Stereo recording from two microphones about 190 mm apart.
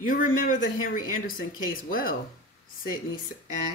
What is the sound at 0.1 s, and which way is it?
Speech, 45° left (ahead or behind).